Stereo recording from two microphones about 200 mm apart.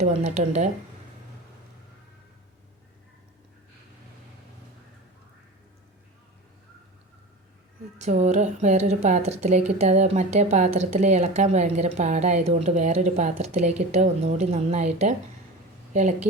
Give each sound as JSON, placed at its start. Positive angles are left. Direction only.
{"t": 0.0, "sound": "a woman's voice", "side_deg": -30}
{"t": 7.9, "sound": "a woman's voice", "side_deg": -35}